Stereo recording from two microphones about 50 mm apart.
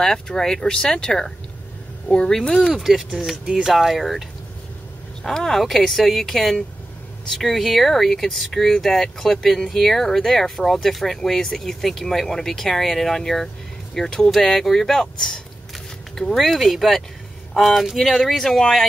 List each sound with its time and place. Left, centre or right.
0.0 s speech: centre
2.7 s speech: centre
3.4 s speech: centre
5.2 s speech: centre